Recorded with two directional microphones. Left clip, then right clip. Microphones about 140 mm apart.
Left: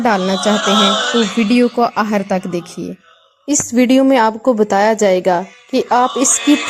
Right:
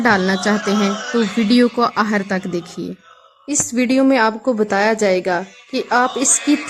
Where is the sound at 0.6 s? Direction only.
90° left.